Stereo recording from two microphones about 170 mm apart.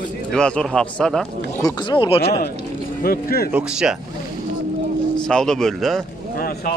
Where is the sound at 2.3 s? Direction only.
70° left (ahead or behind).